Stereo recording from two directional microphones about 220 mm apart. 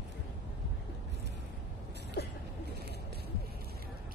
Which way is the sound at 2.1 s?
45° left (ahead or behind).